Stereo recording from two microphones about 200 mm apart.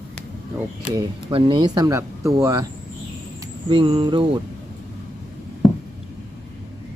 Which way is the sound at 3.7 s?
25° right (ahead or behind).